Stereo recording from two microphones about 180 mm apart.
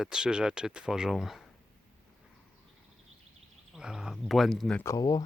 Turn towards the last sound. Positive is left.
turn(degrees=20)  # may be behind; listen again after turning